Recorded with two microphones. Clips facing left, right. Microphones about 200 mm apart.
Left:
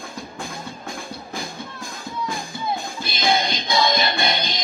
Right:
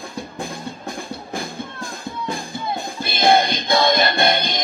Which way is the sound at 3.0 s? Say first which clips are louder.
Right 6 dB; 55° right (ahead or behind).